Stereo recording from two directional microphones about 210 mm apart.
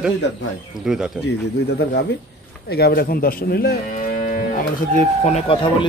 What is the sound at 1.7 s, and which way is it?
Speech, 50° left (ahead or behind).